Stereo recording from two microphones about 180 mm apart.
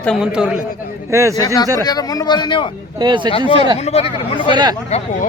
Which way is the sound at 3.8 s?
35° left (ahead or behind).